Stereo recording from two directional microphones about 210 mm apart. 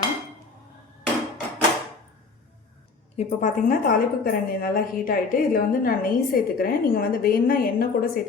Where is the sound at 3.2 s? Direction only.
35° left (ahead or behind).